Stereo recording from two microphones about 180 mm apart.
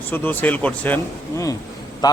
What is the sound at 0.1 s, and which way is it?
Speech, 10° left (ahead or behind).